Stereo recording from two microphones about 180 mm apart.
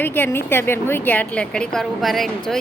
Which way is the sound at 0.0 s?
10° left (ahead or behind).